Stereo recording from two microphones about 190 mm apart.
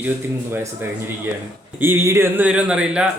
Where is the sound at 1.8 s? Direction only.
10° right (ahead or behind).